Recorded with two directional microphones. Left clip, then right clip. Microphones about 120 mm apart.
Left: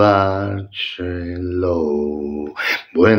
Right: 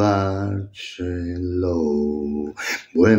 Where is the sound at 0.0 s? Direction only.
35° right (ahead or behind).